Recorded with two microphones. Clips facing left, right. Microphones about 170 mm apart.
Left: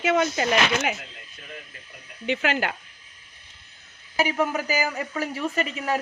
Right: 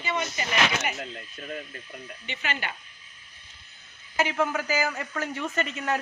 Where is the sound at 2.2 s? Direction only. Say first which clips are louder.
Left 10 dB; 90° left.